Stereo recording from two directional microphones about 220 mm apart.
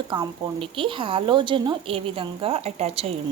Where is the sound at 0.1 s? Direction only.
20° right (ahead or behind).